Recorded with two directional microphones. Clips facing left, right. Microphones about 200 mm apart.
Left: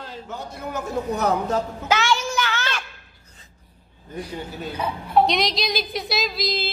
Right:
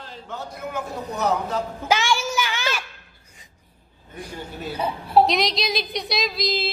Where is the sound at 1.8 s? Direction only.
10° right (ahead or behind).